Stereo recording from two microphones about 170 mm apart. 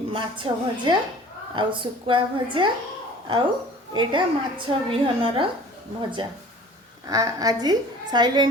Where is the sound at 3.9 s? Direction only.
30° right (ahead or behind).